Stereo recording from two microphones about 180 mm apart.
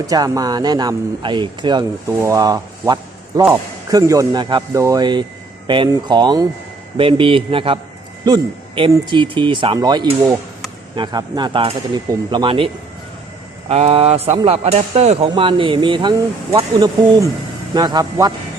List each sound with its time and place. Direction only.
0.1 s speech: 20° right (ahead or behind)
2.0 s speech: 15° right (ahead or behind)